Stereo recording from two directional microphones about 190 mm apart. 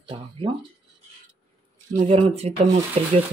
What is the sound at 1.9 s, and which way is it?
Speech, 35° right (ahead or behind).